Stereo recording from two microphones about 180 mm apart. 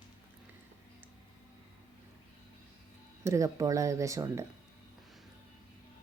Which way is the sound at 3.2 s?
20° right (ahead or behind).